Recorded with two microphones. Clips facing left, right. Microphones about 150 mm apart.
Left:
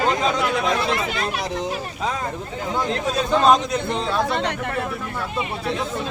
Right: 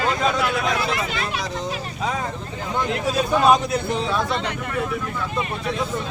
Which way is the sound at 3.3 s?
10° right (ahead or behind).